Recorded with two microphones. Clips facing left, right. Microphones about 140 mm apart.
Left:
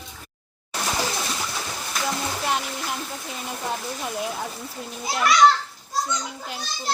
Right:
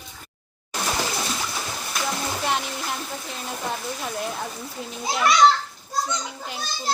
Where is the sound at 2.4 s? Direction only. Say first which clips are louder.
Right 1 dB; centre (ahead or behind).